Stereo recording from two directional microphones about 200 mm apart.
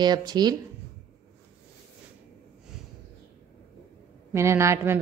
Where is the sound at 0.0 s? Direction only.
20° right (ahead or behind).